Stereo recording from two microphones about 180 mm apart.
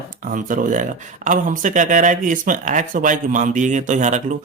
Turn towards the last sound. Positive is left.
turn(degrees=-45)  # may be behind; listen again after turning